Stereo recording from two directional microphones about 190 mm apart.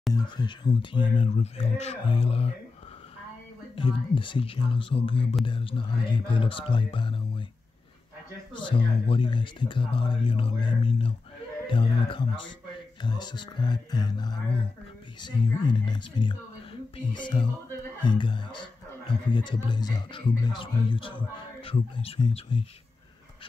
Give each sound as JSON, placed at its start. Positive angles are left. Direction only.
{"t": 0.1, "sound": "speech", "side_deg": 25}
{"t": 3.7, "sound": "speech", "side_deg": 25}
{"t": 8.5, "sound": "speech", "side_deg": 25}